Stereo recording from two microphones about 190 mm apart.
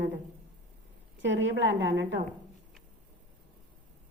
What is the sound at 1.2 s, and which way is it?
A woman's voice, 75° right (ahead or behind).